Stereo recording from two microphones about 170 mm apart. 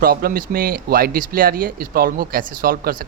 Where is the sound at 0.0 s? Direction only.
60° right (ahead or behind).